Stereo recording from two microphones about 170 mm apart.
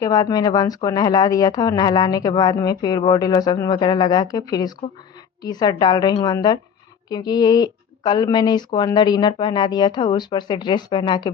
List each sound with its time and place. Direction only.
0.0 s speech: 20° left (ahead or behind)